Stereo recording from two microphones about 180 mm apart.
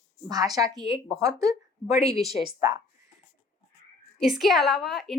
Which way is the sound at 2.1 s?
Centre (ahead or behind).